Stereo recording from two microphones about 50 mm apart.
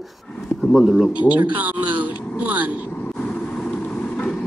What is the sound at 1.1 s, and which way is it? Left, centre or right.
Speech, right.